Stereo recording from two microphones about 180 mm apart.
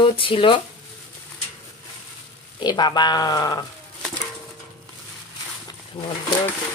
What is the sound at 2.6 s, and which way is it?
Speech, 25° left (ahead or behind).